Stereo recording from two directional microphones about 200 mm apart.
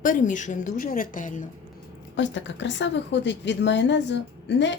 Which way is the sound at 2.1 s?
65° left (ahead or behind).